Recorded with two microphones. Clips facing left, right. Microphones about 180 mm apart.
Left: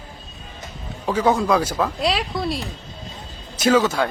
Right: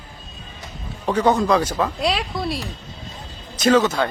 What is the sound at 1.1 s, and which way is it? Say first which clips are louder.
A man's voice: right 1 dB; 5° left (ahead or behind).